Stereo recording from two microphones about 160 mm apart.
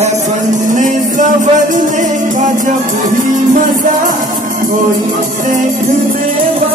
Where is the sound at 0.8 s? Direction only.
50° right (ahead or behind).